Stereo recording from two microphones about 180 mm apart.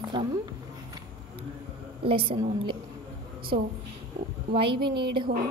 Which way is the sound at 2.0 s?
30° right (ahead or behind).